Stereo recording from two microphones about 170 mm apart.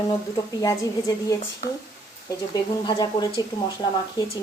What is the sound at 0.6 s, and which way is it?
Speech, 20° left (ahead or behind).